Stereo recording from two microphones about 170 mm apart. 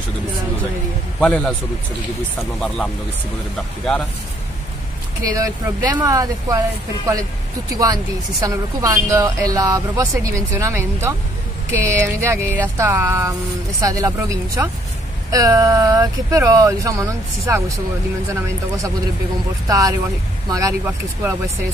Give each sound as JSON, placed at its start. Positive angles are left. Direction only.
{"t": 1.2, "sound": "a man's voice", "side_deg": 5}
{"t": 5.2, "sound": "speech", "side_deg": -20}
{"t": 7.7, "sound": "speech", "side_deg": -20}
{"t": 19.7, "sound": "speech", "side_deg": -20}